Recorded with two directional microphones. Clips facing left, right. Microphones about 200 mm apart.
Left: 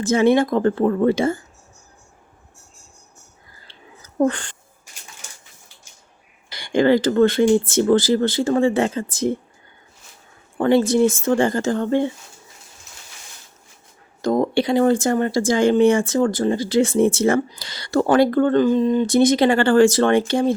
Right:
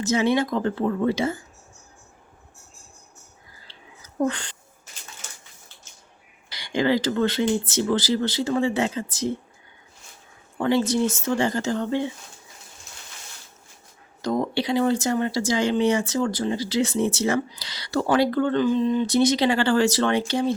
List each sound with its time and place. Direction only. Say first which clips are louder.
0.0 s speech: left 5 dB; 50° left (ahead or behind)
3.7 s a sound: left 4 dB; 50° left (ahead or behind)
6.6 s speech: left 6 dB; 50° left (ahead or behind)
10.6 s speech: left 6 dB; 55° left (ahead or behind)
14.2 s speech: left 6 dB; 50° left (ahead or behind)